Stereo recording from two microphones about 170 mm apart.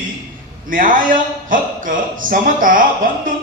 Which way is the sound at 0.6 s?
55° right (ahead or behind).